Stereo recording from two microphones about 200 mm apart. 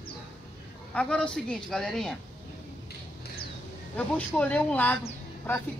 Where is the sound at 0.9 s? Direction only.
5° left (ahead or behind).